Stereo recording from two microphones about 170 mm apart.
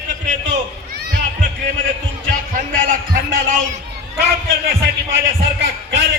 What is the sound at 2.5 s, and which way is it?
A man's voice, 50° right (ahead or behind).